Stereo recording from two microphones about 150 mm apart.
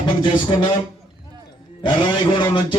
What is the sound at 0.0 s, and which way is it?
Speech, 35° left (ahead or behind).